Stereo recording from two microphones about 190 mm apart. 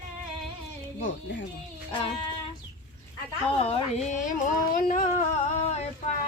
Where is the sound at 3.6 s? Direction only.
35° left (ahead or behind).